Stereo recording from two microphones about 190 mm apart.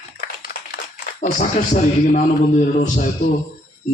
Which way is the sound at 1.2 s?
40° left (ahead or behind).